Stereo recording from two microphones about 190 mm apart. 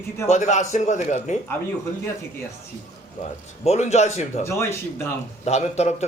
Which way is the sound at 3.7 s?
35° left (ahead or behind).